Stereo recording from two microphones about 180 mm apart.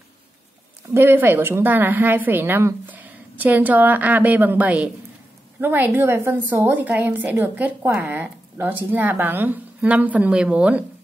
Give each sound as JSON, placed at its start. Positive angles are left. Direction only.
{"t": 0.8, "sound": "a woman's voice", "side_deg": -15}